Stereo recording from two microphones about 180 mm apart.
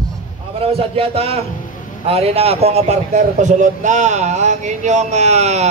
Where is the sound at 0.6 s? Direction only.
30° right (ahead or behind).